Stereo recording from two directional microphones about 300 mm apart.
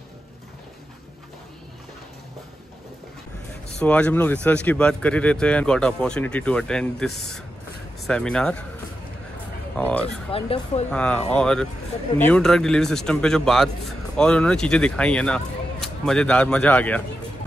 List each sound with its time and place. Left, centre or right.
3.8 s speech: centre
9.8 s speech: centre
10.0 s speech: centre
10.9 s speech: centre